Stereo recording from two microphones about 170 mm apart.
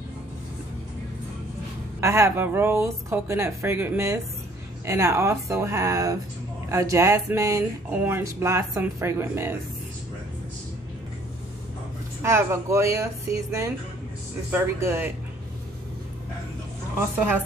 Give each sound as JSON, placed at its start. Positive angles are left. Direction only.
{"t": 2.0, "sound": "speech", "side_deg": -15}
{"t": 12.2, "sound": "speech", "side_deg": -15}